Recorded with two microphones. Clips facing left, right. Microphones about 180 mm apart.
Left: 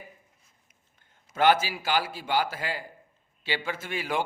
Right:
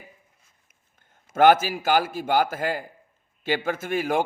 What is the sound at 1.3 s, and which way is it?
A man's voice, 50° right (ahead or behind).